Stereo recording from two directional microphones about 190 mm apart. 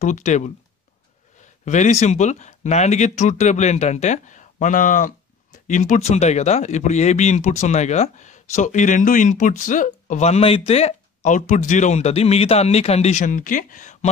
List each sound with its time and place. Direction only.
0.0 s speech: 40° left (ahead or behind)
1.6 s speech: 40° left (ahead or behind)